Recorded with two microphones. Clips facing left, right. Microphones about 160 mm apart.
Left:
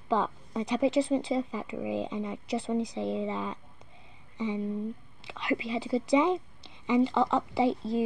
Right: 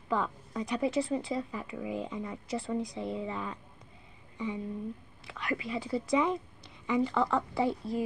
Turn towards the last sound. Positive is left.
turn(degrees=20)  # may be behind; listen again after turning